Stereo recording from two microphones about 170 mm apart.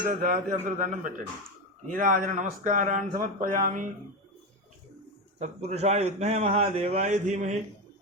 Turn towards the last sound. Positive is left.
turn(degrees=-45)  # may be behind; listen again after turning